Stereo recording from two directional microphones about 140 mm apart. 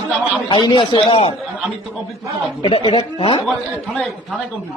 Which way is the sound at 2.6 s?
35° left (ahead or behind).